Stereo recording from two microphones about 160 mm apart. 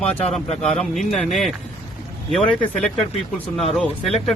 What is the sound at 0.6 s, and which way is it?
Speech, 5° left (ahead or behind).